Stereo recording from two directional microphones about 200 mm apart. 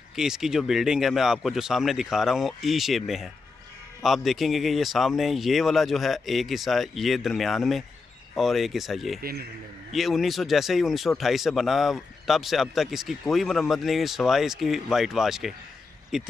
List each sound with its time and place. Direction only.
0.1 s speech: centre (ahead or behind)
9.2 s speech: 50° right (ahead or behind)
9.9 s speech: centre (ahead or behind)